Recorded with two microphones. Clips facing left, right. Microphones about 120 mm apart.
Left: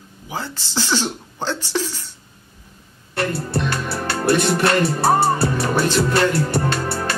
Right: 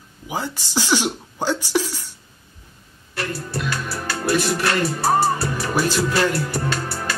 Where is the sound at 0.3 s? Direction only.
15° right (ahead or behind).